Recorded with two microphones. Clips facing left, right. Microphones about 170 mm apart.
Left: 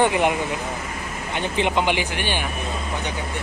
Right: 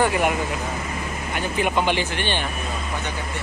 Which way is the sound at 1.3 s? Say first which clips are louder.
Left 1 dB; 25° left (ahead or behind).